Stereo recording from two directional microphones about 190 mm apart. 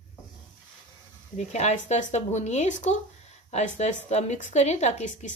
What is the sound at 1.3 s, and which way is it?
Speech, 35° left (ahead or behind).